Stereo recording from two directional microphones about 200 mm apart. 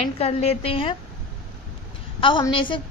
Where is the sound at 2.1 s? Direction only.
25° left (ahead or behind).